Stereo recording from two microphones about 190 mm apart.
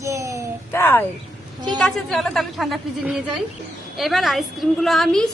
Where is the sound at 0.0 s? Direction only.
15° right (ahead or behind).